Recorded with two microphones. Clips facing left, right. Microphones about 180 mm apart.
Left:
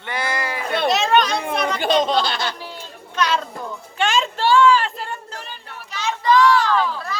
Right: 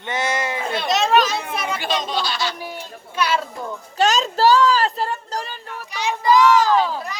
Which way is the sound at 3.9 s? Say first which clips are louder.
Right 3 dB; 40° right (ahead or behind).